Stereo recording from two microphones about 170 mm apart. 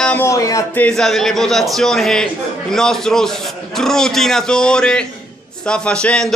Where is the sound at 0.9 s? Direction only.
5° left (ahead or behind).